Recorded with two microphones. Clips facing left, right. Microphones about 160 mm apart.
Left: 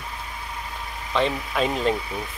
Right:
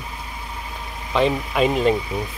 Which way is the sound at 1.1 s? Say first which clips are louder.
Right 4 dB; 10° right (ahead or behind).